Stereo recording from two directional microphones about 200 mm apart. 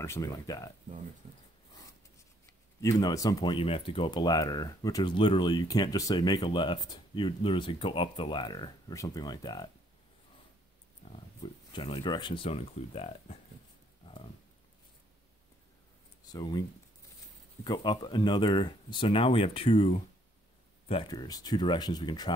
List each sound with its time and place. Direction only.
0.0 s speech: 15° left (ahead or behind)
2.8 s speech: 20° left (ahead or behind)
11.7 s speech: 25° left (ahead or behind)
16.3 s speech: 20° left (ahead or behind)
17.6 s speech: 20° left (ahead or behind)